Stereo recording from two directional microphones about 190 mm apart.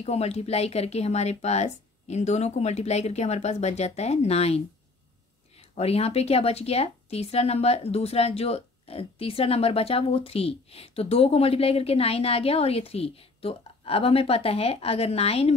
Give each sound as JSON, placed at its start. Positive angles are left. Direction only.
{"t": 0.0, "sound": "speech", "side_deg": 35}
{"t": 5.6, "sound": "speech", "side_deg": 30}